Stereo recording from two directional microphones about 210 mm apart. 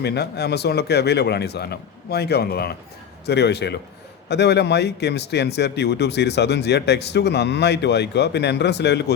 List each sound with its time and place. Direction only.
0.0 s speech: 50° left (ahead or behind)